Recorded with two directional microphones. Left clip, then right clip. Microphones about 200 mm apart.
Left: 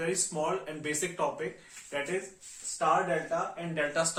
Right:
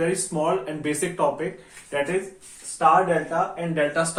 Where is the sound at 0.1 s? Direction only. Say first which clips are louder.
Right 7 dB; 5° left (ahead or behind).